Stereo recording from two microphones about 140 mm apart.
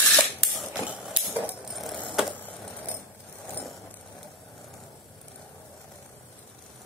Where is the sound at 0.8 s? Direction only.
5° right (ahead or behind).